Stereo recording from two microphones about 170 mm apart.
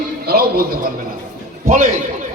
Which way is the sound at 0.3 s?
65° right (ahead or behind).